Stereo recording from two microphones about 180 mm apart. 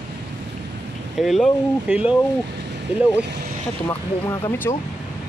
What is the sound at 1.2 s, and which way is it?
Speech, centre (ahead or behind).